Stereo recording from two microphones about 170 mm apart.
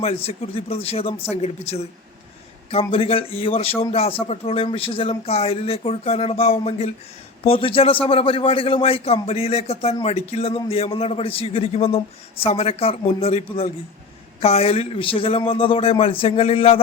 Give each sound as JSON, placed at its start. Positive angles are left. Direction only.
{"t": 0.0, "sound": "speech", "side_deg": 35}